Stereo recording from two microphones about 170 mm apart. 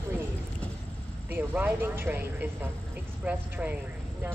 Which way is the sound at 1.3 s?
10° right (ahead or behind).